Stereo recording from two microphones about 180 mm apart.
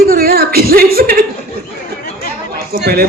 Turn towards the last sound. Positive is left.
turn(degrees=-60)  # may be behind; listen again after turning